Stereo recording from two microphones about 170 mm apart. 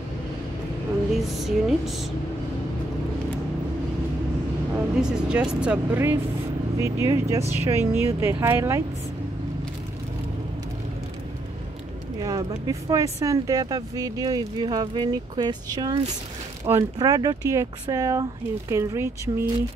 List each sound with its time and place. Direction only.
1.1 s speech: centre (ahead or behind)
5.0 s a woman's voice: 5° right (ahead or behind)
12.2 s a woman's voice: 20° right (ahead or behind)